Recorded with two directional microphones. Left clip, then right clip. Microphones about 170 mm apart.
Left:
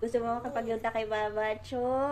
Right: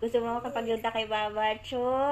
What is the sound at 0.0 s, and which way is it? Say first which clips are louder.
A woman's voice: right 2 dB; 10° right (ahead or behind).